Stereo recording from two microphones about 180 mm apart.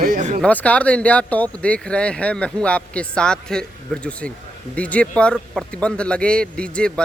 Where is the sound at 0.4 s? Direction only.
10° left (ahead or behind).